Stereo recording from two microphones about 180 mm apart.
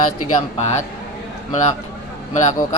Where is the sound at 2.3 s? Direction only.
40° left (ahead or behind).